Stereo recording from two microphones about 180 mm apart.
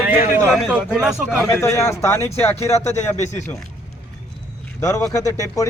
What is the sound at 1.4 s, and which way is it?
Speech, 15° left (ahead or behind).